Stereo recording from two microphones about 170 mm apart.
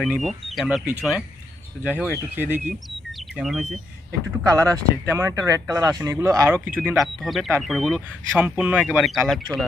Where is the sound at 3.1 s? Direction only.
Centre (ahead or behind).